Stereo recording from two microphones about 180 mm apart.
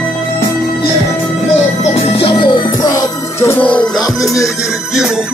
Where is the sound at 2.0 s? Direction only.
30° left (ahead or behind); by 3.7 s 15° left (ahead or behind).